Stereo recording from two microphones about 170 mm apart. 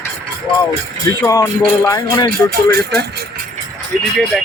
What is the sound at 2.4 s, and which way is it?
Speech, 65° right (ahead or behind).